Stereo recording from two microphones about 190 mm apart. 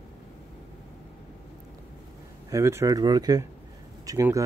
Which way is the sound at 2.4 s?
15° right (ahead or behind).